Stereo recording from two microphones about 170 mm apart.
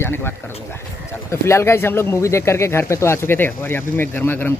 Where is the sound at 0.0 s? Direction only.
15° left (ahead or behind).